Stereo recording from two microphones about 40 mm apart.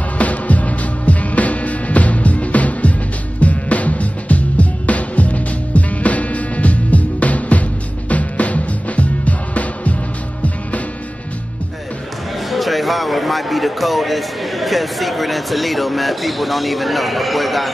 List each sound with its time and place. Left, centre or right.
0.2 s music: left
12.4 s speech: centre